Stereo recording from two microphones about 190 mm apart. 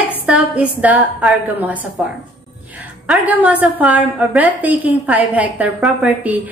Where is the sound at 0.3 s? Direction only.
5° right (ahead or behind).